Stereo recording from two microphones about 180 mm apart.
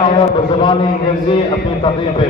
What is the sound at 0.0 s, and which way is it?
A man's voice, 25° left (ahead or behind).